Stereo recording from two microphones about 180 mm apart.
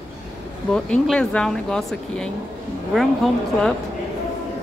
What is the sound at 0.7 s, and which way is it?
Speech, 5° left (ahead or behind).